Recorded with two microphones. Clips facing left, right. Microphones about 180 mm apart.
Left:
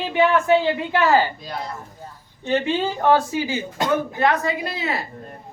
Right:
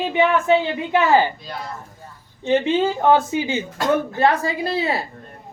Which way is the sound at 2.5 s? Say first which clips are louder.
Right 3 dB; 20° right (ahead or behind).